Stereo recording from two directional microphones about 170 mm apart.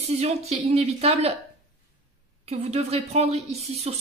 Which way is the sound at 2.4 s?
40° right (ahead or behind).